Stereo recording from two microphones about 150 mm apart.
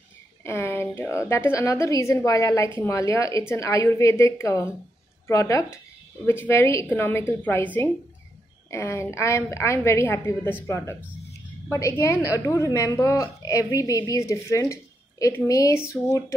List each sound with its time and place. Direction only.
0.4 s a woman's voice: 15° left (ahead or behind)
11.7 s a woman's voice: 20° left (ahead or behind)